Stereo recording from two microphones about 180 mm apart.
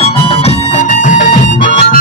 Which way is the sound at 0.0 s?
35° left (ahead or behind).